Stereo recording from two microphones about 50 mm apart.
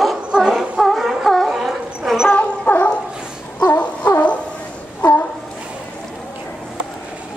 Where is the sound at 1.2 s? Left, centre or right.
Centre.